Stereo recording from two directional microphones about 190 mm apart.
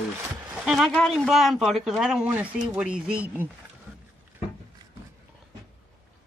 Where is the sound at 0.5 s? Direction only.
Centre (ahead or behind).